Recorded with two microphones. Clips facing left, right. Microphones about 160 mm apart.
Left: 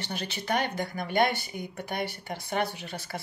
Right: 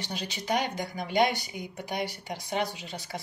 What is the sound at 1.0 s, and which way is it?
Speech, 55° left (ahead or behind).